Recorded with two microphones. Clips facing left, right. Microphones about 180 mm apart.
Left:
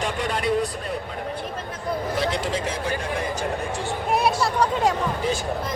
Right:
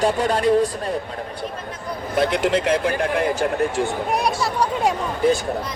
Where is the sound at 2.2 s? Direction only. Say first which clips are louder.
Right 11 dB; 60° right (ahead or behind).